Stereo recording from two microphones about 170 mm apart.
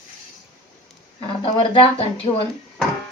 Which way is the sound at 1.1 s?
30° left (ahead or behind).